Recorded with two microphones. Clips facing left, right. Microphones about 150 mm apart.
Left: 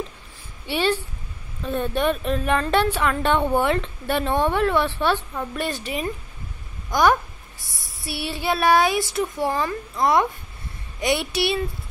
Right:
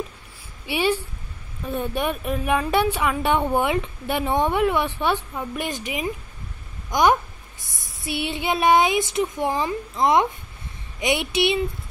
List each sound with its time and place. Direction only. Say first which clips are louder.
0.7 s a woman's voice: even; 10° right (ahead or behind)
6.9 s a sound: even; 20° right (ahead or behind)
7.9 s a woman's voice: right 3 dB; 20° right (ahead or behind)